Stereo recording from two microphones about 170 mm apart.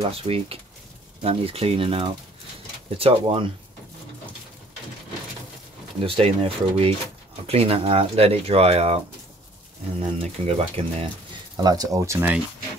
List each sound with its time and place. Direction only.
0.3 s speech: 35° right (ahead or behind)
5.9 s speech: 35° right (ahead or behind)
11.5 s speech: 25° right (ahead or behind)